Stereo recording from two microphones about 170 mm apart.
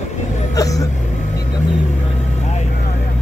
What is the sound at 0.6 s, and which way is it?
Speech, 20° left (ahead or behind).